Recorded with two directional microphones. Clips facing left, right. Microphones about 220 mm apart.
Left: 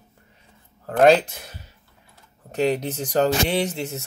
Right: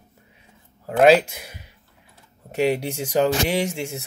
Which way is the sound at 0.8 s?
10° right (ahead or behind).